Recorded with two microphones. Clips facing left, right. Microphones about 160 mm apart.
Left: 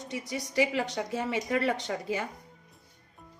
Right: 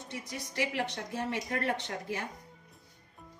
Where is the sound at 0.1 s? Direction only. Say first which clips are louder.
Left 7 dB; 90° left.